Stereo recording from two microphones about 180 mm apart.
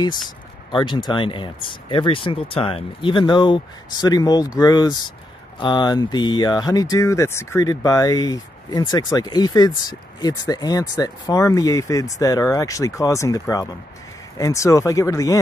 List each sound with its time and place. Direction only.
0.7 s speech: 25° left (ahead or behind)